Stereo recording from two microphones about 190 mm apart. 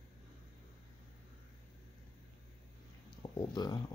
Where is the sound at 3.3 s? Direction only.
25° left (ahead or behind).